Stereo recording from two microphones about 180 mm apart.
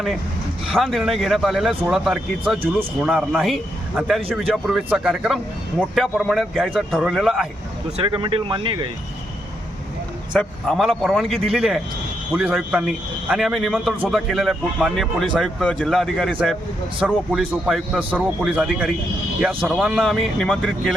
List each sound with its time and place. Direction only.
0.7 s speech: centre (ahead or behind)
7.9 s speech: 30° right (ahead or behind)
10.3 s a man's voice: centre (ahead or behind)